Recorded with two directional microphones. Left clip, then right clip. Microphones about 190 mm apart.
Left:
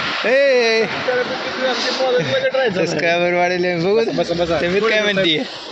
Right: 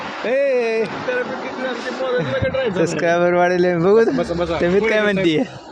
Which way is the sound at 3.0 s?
25° right (ahead or behind).